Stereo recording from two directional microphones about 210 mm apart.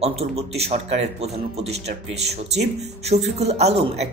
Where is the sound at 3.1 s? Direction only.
30° right (ahead or behind).